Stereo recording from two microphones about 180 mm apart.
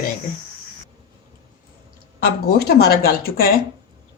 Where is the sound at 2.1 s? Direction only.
60° left (ahead or behind).